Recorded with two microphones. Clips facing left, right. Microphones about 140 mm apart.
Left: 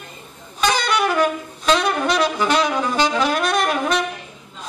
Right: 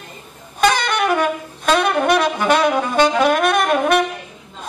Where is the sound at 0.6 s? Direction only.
50° right (ahead or behind).